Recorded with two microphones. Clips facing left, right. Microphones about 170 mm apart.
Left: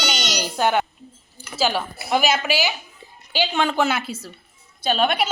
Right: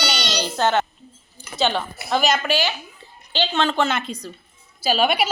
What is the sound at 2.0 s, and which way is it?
A woman's voice, 10° left (ahead or behind).